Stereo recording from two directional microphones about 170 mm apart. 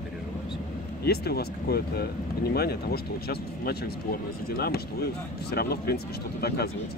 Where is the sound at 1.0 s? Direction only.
65° left (ahead or behind).